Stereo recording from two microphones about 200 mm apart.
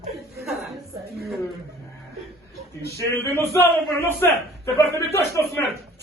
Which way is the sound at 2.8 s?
15° left (ahead or behind).